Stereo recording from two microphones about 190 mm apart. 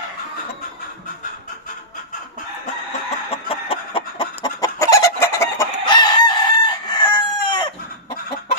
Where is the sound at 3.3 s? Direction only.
30° left (ahead or behind).